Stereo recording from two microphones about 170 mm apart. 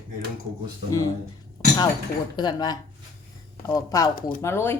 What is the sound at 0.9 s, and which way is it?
Speech, 20° left (ahead or behind).